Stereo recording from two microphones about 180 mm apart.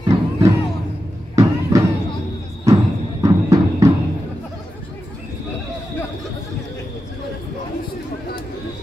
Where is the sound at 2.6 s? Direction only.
15° right (ahead or behind).